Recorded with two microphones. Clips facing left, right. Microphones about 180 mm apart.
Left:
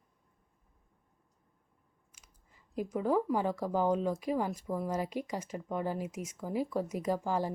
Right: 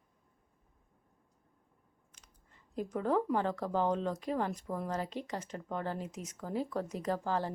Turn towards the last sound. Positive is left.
turn(degrees=10)  # may be behind; listen again after turning